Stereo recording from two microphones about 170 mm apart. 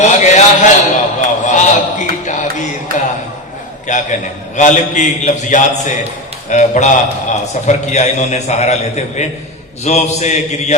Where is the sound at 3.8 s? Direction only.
45° left (ahead or behind).